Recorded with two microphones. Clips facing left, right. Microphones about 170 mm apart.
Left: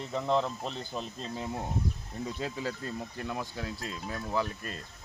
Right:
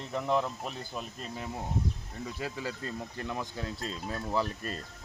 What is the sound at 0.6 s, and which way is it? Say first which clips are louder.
Speech: left 2 dB; 10° right (ahead or behind).